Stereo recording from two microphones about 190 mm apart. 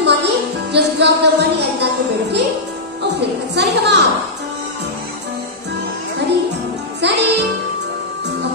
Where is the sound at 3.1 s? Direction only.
65° right (ahead or behind).